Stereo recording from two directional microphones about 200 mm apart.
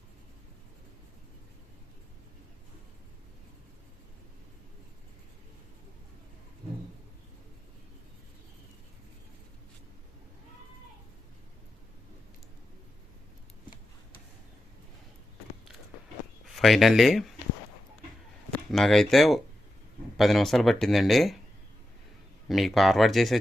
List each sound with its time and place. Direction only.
16.6 s speech: centre (ahead or behind)
18.5 s speech: centre (ahead or behind)
22.4 s speech: centre (ahead or behind)